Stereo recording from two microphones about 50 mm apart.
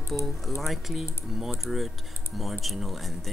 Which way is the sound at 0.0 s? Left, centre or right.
Left.